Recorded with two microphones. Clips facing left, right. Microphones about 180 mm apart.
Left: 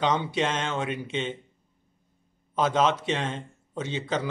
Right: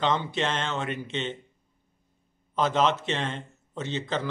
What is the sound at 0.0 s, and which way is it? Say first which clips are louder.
A man's voice: left 1 dB; 10° left (ahead or behind).